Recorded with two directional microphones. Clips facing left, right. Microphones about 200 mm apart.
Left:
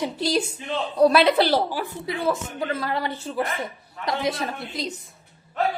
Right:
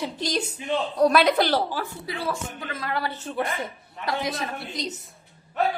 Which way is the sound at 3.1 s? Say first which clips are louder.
Left 1 dB; 5° left (ahead or behind).